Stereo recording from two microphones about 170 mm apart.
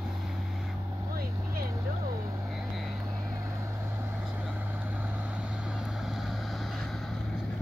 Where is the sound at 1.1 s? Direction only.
60° right (ahead or behind).